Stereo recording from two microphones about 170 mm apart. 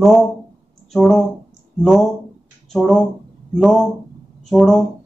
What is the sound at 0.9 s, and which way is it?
A man's voice, centre (ahead or behind).